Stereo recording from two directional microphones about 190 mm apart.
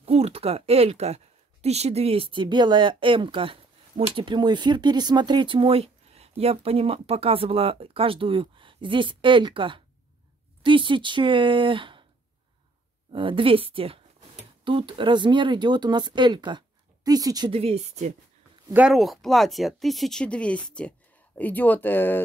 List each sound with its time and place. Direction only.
0.0 s speech: 30° right (ahead or behind)
13.1 s speech: 25° right (ahead or behind)
17.6 s speech: 35° right (ahead or behind)
18.7 s speech: 5° right (ahead or behind); by 22.2 s 10° left (ahead or behind)